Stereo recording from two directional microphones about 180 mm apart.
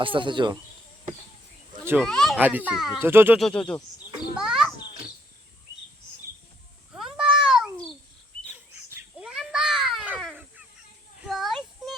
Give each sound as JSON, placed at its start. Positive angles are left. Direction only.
{"t": 0.0, "sound": "speech", "side_deg": -25}
{"t": 1.8, "sound": "speech", "side_deg": -10}
{"t": 2.0, "sound": "a child's voice", "side_deg": 0}
{"t": 2.4, "sound": "a child's voice", "side_deg": -10}
{"t": 3.3, "sound": "speech", "side_deg": 5}
{"t": 4.4, "sound": "a sound", "side_deg": -5}
{"t": 6.9, "sound": "a sound", "side_deg": -5}
{"t": 8.4, "sound": "a sound", "side_deg": -10}
{"t": 11.3, "sound": "child singing", "side_deg": 0}